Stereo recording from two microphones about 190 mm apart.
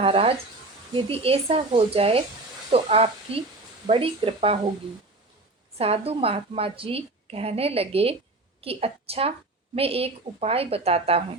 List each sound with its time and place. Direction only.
0.0 s a woman's voice: 30° right (ahead or behind)
5.7 s a woman's voice: 30° right (ahead or behind)